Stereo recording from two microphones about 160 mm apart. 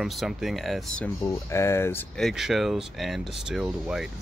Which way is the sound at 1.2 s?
15° left (ahead or behind).